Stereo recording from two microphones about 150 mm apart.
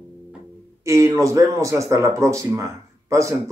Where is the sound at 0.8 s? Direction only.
20° right (ahead or behind).